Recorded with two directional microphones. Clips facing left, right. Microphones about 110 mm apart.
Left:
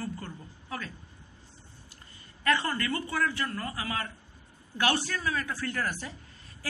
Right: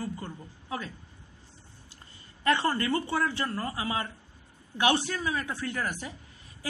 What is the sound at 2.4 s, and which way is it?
A woman's voice, 25° right (ahead or behind).